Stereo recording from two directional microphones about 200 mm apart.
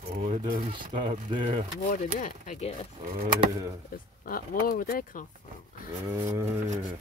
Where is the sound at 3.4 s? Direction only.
20° right (ahead or behind).